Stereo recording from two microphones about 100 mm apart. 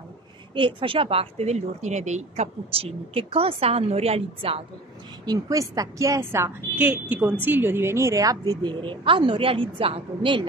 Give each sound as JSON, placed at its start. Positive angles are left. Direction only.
{"t": 0.6, "sound": "a woman's voice", "side_deg": -60}
{"t": 5.2, "sound": "a woman's voice", "side_deg": -40}
{"t": 6.8, "sound": "a woman's voice", "side_deg": -15}
{"t": 8.8, "sound": "a woman's voice", "side_deg": -60}